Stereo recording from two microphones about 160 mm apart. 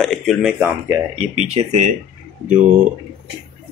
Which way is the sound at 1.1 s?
40° right (ahead or behind).